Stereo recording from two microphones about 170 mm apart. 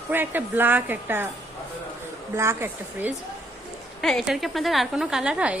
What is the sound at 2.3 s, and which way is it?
Speech, 15° right (ahead or behind).